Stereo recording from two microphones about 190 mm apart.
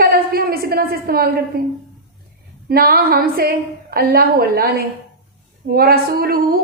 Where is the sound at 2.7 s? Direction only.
50° right (ahead or behind).